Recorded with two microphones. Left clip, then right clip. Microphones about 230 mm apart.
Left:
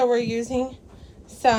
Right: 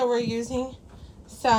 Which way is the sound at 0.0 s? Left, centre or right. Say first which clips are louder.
Left 3 dB; centre.